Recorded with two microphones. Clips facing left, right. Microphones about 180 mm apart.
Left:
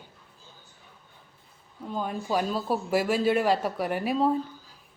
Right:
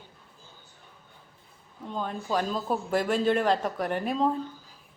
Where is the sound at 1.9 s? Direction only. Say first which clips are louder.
Left 1 dB; 10° left (ahead or behind).